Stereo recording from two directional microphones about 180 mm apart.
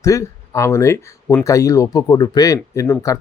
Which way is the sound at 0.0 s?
15° left (ahead or behind).